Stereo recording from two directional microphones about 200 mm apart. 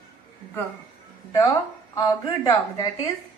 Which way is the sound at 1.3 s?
15° left (ahead or behind).